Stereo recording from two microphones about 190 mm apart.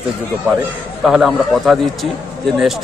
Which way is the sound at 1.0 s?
Centre (ahead or behind).